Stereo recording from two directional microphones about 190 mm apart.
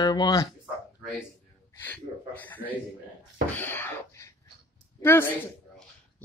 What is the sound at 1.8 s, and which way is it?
Speech, 10° left (ahead or behind).